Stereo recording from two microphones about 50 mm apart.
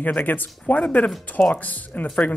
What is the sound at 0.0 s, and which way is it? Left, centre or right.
Speech, left.